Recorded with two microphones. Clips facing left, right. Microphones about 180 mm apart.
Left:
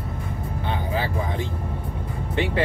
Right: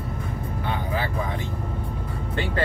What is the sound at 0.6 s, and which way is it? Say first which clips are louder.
Music: left 1 dB; 25° left (ahead or behind).